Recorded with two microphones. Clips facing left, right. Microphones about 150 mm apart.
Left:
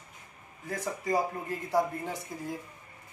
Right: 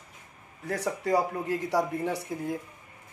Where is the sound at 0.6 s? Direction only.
70° right (ahead or behind).